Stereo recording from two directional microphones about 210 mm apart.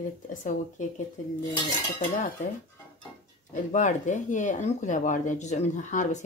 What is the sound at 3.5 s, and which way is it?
Speech, 35° left (ahead or behind).